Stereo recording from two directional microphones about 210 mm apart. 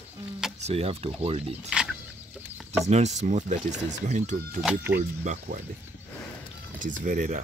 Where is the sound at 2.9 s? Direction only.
30° right (ahead or behind).